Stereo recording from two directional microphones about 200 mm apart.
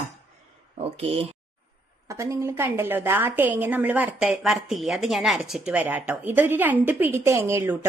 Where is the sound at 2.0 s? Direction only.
15° right (ahead or behind).